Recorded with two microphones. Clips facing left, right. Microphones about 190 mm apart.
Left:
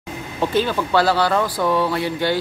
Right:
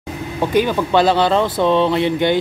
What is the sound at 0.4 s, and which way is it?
Speech, 15° right (ahead or behind).